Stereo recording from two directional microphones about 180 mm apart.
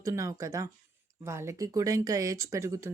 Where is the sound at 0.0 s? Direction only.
15° right (ahead or behind).